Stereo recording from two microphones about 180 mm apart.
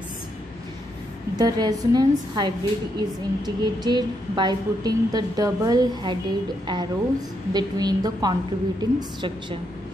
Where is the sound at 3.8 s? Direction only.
25° right (ahead or behind).